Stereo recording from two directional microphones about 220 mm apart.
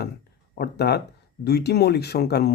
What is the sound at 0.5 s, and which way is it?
Speech, 45° left (ahead or behind).